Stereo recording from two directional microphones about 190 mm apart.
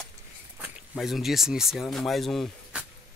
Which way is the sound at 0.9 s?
Centre (ahead or behind).